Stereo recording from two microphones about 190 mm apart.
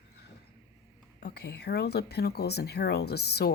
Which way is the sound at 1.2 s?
60° left (ahead or behind).